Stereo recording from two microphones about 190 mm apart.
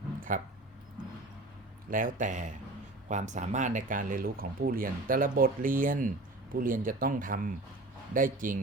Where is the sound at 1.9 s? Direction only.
45° right (ahead or behind).